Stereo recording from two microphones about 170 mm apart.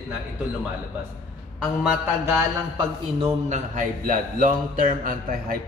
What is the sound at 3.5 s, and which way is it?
A man's voice, 50° right (ahead or behind).